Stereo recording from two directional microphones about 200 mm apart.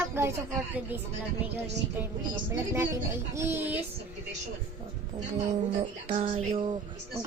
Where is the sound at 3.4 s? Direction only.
10° right (ahead or behind).